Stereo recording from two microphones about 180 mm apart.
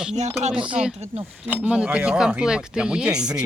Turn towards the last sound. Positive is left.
turn(degrees=-5)  # may be behind; listen again after turning